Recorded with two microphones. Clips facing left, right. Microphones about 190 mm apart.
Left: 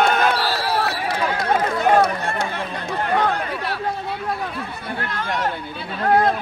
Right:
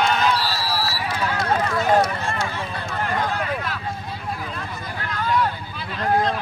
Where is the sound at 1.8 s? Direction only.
60° left (ahead or behind).